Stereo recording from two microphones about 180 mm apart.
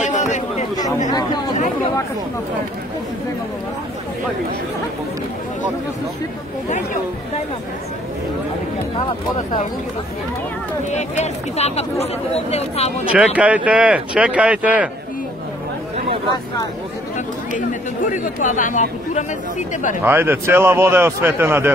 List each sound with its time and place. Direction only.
0.0 s chatter: 40° left (ahead or behind)
1.1 s speech: 25° left (ahead or behind)
10.9 s speech: 40° left (ahead or behind)
13.1 s speech: 5° right (ahead or behind)
17.6 s speech: 45° left (ahead or behind)
20.0 s speech: 10° right (ahead or behind)